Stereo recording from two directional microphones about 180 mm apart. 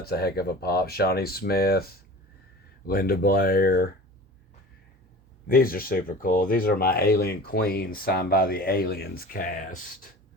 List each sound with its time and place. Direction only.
0.0 s speech: 60° left (ahead or behind)
2.8 s speech: 55° left (ahead or behind)
5.5 s speech: 55° left (ahead or behind)